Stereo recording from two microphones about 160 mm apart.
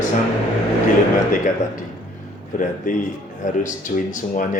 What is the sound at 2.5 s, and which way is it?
A man's voice, 55° left (ahead or behind).